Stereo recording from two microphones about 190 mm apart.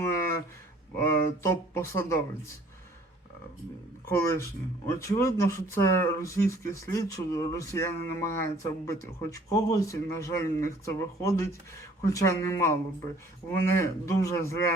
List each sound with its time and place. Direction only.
0.0 s a sound: 15° left (ahead or behind)
0.9 s speech: 15° left (ahead or behind)
4.1 s speech: 15° left (ahead or behind)